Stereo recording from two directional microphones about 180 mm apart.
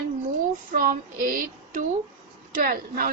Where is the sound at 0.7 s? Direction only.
50° right (ahead or behind).